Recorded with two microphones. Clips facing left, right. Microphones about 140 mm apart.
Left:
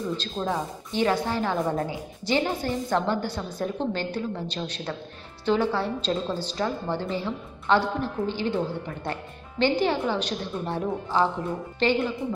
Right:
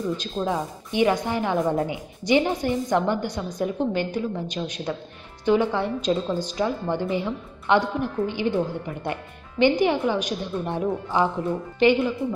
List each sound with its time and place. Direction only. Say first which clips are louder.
0.2 s a woman's voice: right 2 dB; 10° right (ahead or behind)